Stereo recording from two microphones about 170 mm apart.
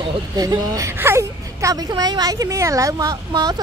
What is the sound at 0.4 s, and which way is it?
Speech, 20° right (ahead or behind).